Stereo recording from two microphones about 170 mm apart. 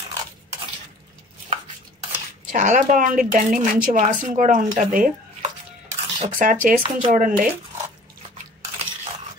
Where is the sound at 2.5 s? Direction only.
50° right (ahead or behind).